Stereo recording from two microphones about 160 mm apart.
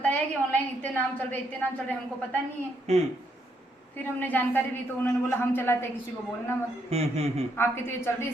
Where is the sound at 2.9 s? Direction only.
45° right (ahead or behind).